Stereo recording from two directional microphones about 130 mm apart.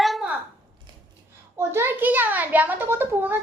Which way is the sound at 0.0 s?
Centre (ahead or behind).